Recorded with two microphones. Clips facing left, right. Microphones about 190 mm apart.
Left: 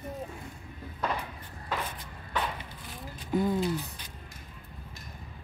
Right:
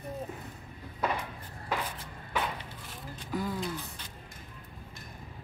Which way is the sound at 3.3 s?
20° left (ahead or behind).